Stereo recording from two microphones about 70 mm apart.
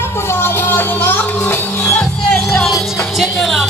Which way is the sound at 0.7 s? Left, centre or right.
Left.